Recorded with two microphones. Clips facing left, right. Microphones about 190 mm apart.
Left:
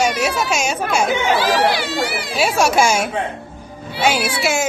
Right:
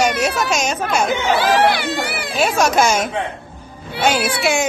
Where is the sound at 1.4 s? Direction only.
55° right (ahead or behind).